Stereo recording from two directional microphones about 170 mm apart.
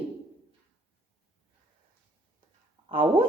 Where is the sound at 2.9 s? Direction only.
30° right (ahead or behind).